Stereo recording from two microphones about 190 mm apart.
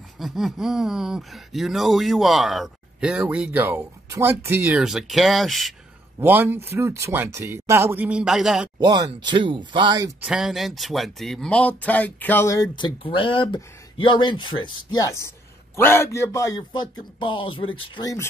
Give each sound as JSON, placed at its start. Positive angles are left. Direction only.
{"t": 0.2, "sound": "speech", "side_deg": 0}
{"t": 8.7, "sound": "speech", "side_deg": -20}
{"t": 10.2, "sound": "speech", "side_deg": -5}
{"t": 12.7, "sound": "a man's voice", "side_deg": 25}